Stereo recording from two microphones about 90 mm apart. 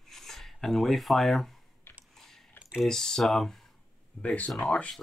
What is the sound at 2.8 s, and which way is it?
Speech, 5° left (ahead or behind).